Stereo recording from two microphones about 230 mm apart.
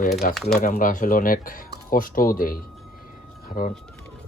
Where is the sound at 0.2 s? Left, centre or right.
Left.